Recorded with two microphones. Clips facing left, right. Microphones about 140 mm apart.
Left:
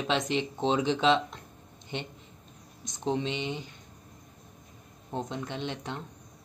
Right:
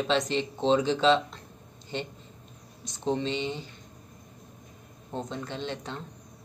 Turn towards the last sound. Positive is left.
turn(degrees=15)  # may be behind; listen again after turning